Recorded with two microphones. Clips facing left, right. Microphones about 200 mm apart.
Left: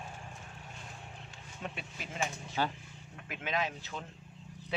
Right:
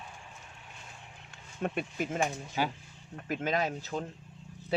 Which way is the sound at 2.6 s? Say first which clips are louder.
Right 2 dB; 10° right (ahead or behind).